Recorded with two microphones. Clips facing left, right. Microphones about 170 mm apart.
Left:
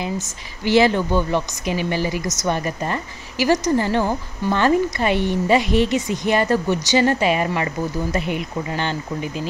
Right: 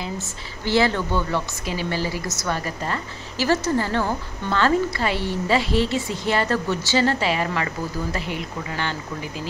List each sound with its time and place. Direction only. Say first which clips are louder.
0.0 s a woman's voice: left 4 dB; 15° left (ahead or behind)